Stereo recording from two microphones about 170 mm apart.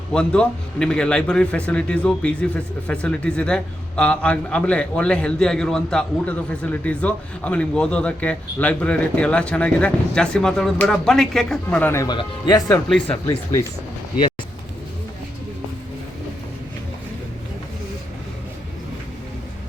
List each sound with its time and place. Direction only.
0.1 s a man's voice: 5° left (ahead or behind)
12.0 s speech: 25° left (ahead or behind)